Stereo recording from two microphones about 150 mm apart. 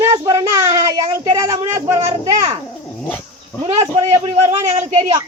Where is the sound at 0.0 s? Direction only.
25° right (ahead or behind).